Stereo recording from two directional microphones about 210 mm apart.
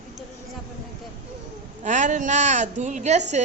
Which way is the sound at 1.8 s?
35° right (ahead or behind).